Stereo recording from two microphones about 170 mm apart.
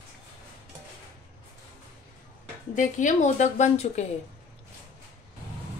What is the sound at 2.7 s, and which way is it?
A woman's voice, 50° left (ahead or behind).